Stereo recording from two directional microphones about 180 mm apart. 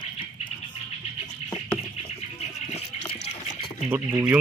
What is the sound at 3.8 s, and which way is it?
Speech, 15° right (ahead or behind).